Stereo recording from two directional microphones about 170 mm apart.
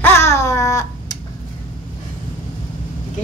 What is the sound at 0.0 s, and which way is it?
Babbling, 15° left (ahead or behind).